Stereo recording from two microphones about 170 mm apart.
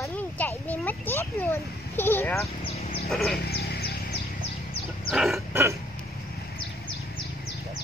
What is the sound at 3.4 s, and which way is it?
Wild animals, 65° left (ahead or behind).